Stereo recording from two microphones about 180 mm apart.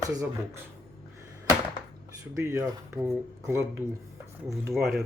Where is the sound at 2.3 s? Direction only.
15° right (ahead or behind).